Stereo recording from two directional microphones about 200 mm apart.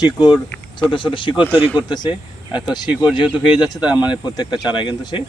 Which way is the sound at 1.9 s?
20° left (ahead or behind).